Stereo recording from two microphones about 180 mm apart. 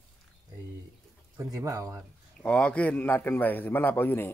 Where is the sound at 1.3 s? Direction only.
15° right (ahead or behind).